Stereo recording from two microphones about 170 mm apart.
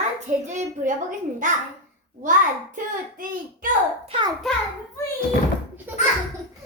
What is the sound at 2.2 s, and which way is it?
A child's voice, 50° right (ahead or behind).